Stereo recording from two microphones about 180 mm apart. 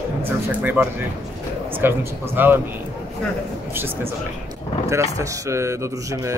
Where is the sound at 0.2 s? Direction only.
10° right (ahead or behind).